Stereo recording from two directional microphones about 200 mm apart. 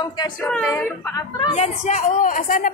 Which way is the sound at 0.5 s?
5° left (ahead or behind).